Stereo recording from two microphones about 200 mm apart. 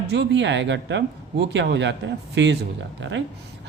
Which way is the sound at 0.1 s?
65° right (ahead or behind).